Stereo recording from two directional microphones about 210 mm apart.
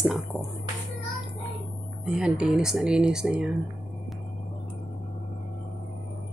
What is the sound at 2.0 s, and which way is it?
Speech, 5° right (ahead or behind).